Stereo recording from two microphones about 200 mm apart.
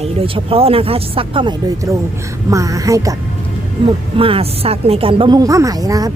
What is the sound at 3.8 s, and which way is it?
Speech, 25° right (ahead or behind).